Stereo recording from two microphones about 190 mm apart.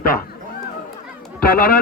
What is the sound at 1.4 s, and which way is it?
Speech, 50° left (ahead or behind).